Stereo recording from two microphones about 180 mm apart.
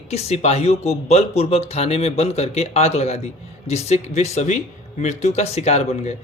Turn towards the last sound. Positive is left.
turn(degrees=40)  # may be behind; listen again after turning